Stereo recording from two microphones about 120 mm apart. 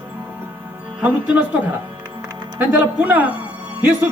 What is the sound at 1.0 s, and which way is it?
Speech, 15° right (ahead or behind).